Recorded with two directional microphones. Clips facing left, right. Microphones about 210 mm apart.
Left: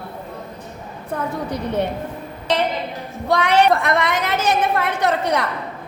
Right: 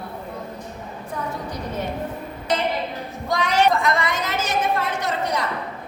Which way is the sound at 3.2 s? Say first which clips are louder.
Left 4 dB; 65° left (ahead or behind).